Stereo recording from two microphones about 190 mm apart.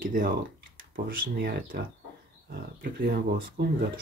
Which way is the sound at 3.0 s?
55° right (ahead or behind).